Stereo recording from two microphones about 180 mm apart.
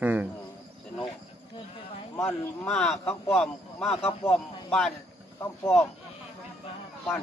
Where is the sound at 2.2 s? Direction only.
5° left (ahead or behind).